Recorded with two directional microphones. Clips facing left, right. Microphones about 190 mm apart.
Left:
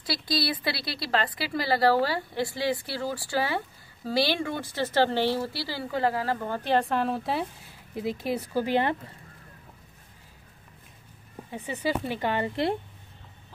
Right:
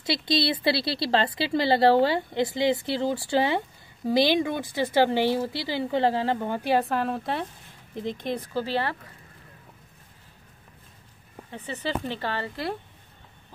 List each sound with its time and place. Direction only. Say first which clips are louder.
0.0 s a woman's voice: right 4 dB; 25° right (ahead or behind); by 8.9 s 15° left (ahead or behind)
11.5 s speech: left 2 dB; 10° left (ahead or behind)